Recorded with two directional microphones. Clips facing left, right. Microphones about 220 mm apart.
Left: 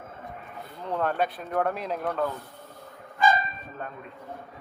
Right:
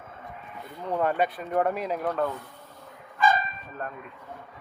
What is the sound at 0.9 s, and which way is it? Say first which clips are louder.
Speech: right 2 dB; 5° right (ahead or behind).